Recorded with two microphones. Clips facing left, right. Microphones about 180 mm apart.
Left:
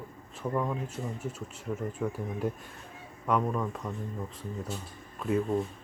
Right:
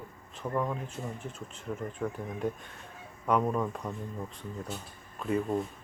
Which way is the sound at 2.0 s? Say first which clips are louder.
Even; 5° left (ahead or behind).